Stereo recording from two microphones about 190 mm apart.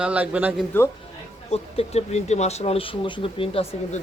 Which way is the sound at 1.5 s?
35° left (ahead or behind).